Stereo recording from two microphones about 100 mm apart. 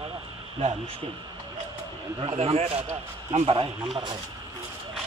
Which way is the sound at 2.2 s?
75° right (ahead or behind).